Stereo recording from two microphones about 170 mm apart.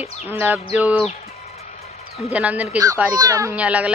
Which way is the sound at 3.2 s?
20° right (ahead or behind).